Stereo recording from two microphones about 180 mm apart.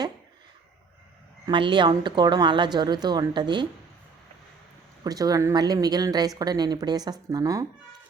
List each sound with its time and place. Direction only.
1.5 s speech: 25° right (ahead or behind)
5.0 s speech: 20° right (ahead or behind)